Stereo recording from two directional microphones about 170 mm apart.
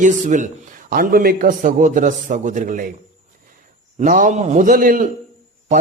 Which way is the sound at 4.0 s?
50° right (ahead or behind).